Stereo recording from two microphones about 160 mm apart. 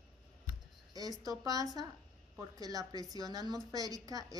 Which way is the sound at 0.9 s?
25° right (ahead or behind).